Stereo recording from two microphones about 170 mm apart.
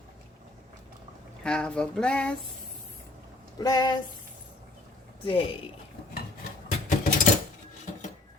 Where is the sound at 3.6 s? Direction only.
20° left (ahead or behind).